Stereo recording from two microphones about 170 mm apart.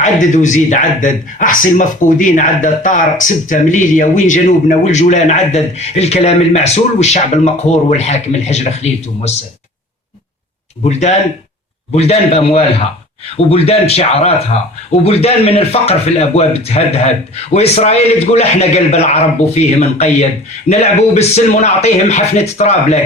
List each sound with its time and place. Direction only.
0.0 s speech: 45° left (ahead or behind)
11.9 s a man's voice: 35° left (ahead or behind)